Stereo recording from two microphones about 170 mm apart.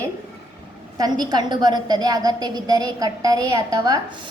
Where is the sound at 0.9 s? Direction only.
25° right (ahead or behind).